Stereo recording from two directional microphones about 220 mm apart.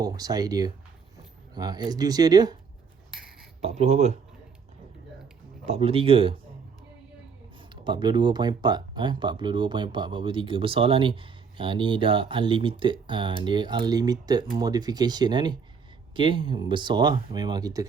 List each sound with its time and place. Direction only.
0.0 s speech: 15° right (ahead or behind)
3.6 s speech: 30° right (ahead or behind)
5.6 s speech: 30° right (ahead or behind)
7.7 s speech: 20° right (ahead or behind)